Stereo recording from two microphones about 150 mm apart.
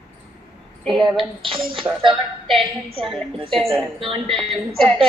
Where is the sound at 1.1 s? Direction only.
35° right (ahead or behind).